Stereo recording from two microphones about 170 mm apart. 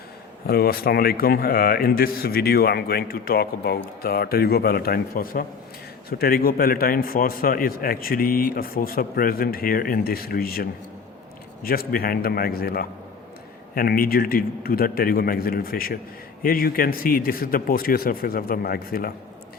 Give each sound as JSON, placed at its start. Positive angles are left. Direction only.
{"t": 0.4, "sound": "speech", "side_deg": 65}